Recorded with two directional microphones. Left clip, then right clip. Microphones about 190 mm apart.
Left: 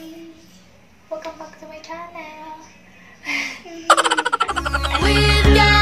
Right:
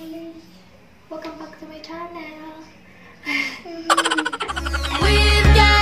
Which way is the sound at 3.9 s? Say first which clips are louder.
Left 3 dB; centre (ahead or behind).